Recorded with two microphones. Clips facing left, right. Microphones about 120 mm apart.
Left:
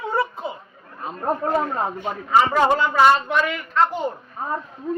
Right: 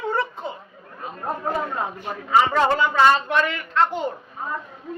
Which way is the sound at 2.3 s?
5° left (ahead or behind).